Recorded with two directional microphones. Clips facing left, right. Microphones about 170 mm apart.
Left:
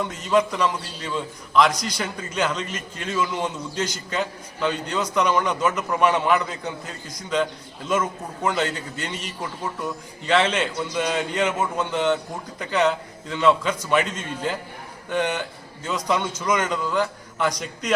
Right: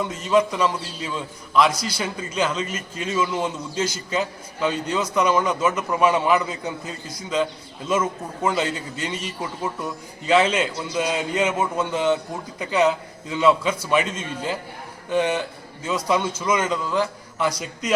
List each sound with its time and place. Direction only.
0.0 s a man's voice: centre (ahead or behind)
1.7 s a man's voice: 40° left (ahead or behind)
2.0 s a man's voice: 5° right (ahead or behind)
7.9 s a man's voice: 5° right (ahead or behind)